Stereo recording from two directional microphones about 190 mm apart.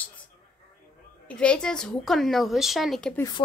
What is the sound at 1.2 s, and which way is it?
Speech, 5° left (ahead or behind).